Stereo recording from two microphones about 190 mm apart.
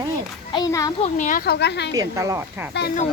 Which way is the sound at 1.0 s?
40° left (ahead or behind).